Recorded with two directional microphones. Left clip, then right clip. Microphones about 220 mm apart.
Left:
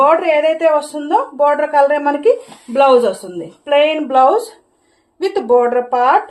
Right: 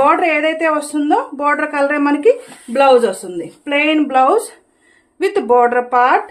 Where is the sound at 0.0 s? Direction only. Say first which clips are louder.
Left 1 dB; 30° right (ahead or behind).